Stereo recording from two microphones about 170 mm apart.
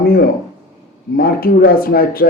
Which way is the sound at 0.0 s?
60° left (ahead or behind).